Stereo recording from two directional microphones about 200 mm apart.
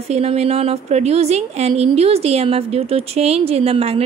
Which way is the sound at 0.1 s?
30° right (ahead or behind).